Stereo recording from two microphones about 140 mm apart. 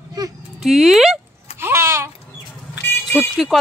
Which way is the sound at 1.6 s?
20° right (ahead or behind).